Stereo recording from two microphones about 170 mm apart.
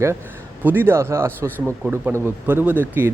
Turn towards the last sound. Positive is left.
turn(degrees=-10)  # may be behind; listen again after turning